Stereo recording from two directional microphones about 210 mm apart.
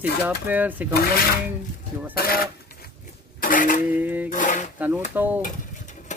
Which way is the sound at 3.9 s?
10° right (ahead or behind).